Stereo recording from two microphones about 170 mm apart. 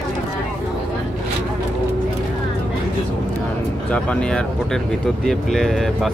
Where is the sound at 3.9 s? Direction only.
5° left (ahead or behind).